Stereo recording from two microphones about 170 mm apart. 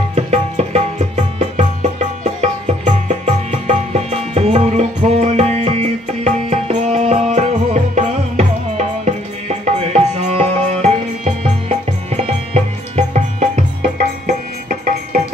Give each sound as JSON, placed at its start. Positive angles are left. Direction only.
{"t": 0.1, "sound": "music", "side_deg": -40}